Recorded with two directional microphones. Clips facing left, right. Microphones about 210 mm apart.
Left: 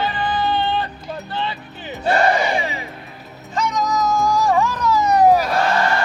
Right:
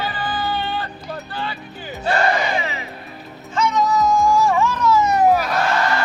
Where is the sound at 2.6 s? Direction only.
30° left (ahead or behind).